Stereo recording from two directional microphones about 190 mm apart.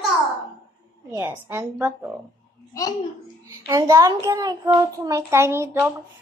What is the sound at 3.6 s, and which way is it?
A child's voice, 15° right (ahead or behind).